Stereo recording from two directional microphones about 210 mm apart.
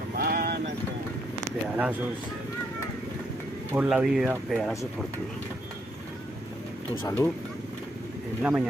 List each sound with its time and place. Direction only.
0.2 s a sound: 45° right (ahead or behind)
3.7 s speech: 5° right (ahead or behind)
7.0 s speech: 15° left (ahead or behind)
8.4 s speech: 5° right (ahead or behind)